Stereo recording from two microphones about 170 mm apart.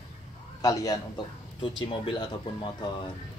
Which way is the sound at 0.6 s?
20° left (ahead or behind).